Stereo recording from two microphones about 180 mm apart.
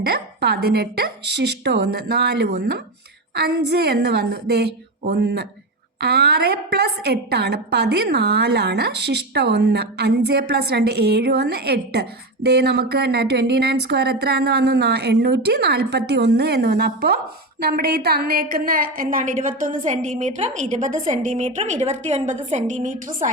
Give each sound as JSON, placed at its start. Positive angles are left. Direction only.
{"t": 0.0, "sound": "a woman's voice", "side_deg": -65}